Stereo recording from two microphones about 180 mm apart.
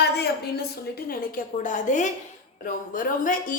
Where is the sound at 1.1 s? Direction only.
50° left (ahead or behind).